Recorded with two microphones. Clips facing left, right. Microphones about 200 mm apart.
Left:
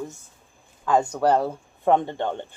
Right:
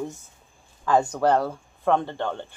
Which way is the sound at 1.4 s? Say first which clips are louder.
Left 1 dB; 15° left (ahead or behind).